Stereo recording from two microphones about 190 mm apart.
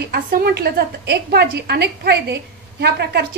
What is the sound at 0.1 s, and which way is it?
A woman's voice, 55° right (ahead or behind).